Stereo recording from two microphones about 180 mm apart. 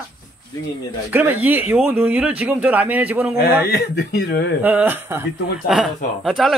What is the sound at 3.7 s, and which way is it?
Speech, 60° left (ahead or behind).